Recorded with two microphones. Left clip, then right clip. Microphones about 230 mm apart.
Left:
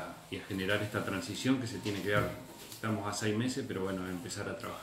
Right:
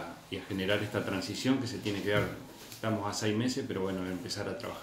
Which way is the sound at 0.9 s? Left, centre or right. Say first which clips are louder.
Right 2 dB; centre.